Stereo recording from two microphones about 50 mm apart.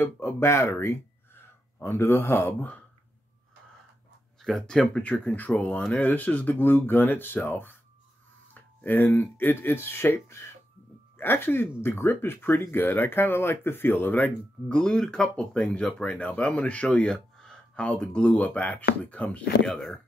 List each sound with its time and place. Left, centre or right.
0.0 s speech: left
1.8 s speech: left
4.4 s speech: centre
5.0 s speech: left
8.5 s a sound: left
9.4 s speech: left
14.7 s speech: centre
16.9 s a sound: centre
18.0 s speech: left
19.2 s speech: centre
19.7 s speech: centre